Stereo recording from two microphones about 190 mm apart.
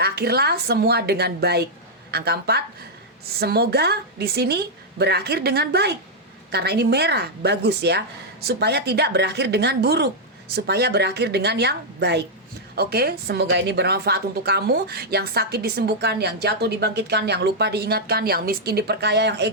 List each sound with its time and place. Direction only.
0.0 s a woman's voice: 55° right (ahead or behind)